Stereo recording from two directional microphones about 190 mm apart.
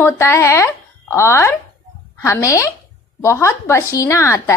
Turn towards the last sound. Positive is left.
turn(degrees=15)  # may be behind; listen again after turning